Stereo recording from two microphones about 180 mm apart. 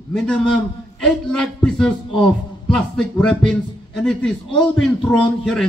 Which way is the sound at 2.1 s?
25° left (ahead or behind).